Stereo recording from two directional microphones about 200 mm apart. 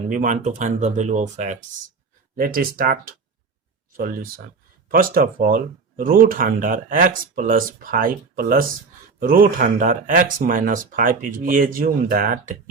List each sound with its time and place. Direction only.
0.1 s speech: 40° right (ahead or behind)
2.3 s speech: 50° right (ahead or behind)